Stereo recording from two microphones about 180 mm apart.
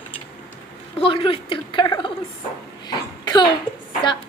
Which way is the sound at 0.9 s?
30° left (ahead or behind).